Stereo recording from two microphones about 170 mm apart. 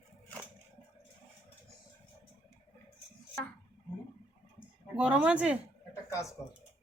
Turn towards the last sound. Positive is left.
turn(degrees=15)  # may be behind; listen again after turning